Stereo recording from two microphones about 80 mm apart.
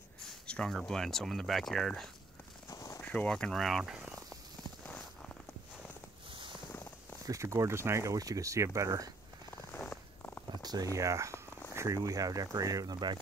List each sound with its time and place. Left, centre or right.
0.5 s speech: centre
2.7 s a sound: left
3.0 s speech: centre
3.5 s speech: centre
7.2 s speech: right
9.7 s purr: left
10.6 s a sound: right
10.9 s speech: right